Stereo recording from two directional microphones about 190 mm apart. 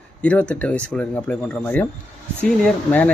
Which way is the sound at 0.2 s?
5° left (ahead or behind).